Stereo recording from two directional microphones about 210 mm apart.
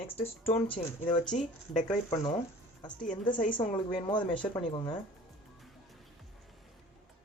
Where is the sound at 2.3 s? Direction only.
20° left (ahead or behind).